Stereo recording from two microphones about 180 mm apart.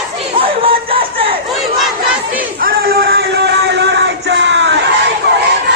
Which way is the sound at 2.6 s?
55° right (ahead or behind).